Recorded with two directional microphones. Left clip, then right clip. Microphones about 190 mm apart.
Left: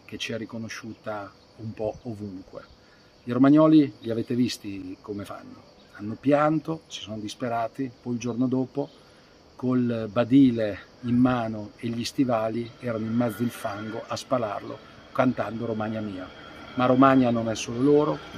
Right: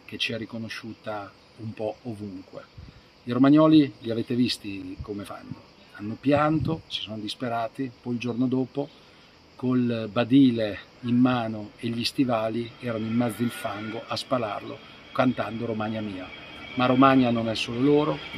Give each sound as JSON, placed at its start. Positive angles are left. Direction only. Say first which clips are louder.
{"t": 0.1, "sound": "speech", "louder": "right 3 dB", "side_deg": 5}